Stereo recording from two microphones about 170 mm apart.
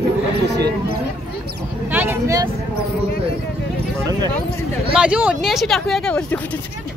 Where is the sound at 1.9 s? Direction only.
15° right (ahead or behind).